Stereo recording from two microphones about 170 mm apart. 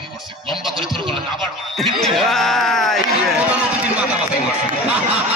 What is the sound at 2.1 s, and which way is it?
Speech, centre (ahead or behind).